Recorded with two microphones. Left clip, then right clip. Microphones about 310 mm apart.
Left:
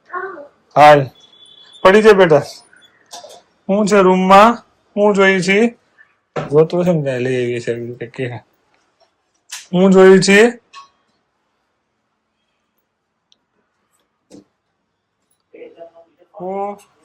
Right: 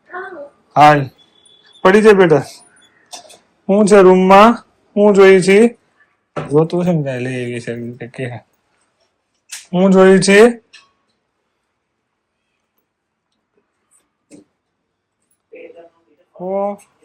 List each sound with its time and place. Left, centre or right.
0.7 s speech: centre
3.7 s speech: centre
9.7 s speech: centre
16.5 s speech: centre